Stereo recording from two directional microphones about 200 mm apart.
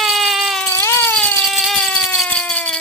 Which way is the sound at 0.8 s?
10° left (ahead or behind).